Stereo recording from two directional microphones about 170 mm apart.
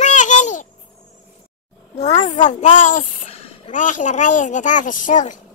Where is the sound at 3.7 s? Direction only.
50° left (ahead or behind).